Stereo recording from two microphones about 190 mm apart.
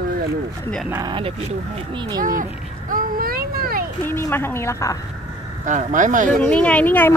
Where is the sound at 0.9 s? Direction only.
25° right (ahead or behind).